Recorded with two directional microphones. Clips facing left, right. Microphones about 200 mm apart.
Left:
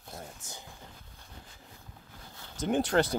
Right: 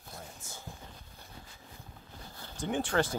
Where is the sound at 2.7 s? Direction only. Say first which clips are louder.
Left 4 dB; 40° left (ahead or behind).